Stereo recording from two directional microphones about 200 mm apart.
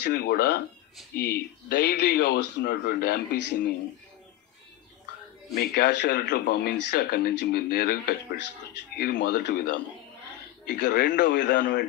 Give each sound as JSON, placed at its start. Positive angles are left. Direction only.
{"t": 0.0, "sound": "speech", "side_deg": 55}
{"t": 5.6, "sound": "speech", "side_deg": 55}